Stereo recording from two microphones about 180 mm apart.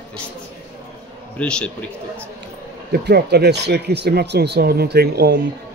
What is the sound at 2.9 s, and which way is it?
Speech, 65° right (ahead or behind).